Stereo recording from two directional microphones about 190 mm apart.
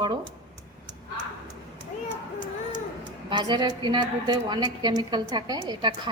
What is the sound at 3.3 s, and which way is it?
A woman's voice, 25° right (ahead or behind).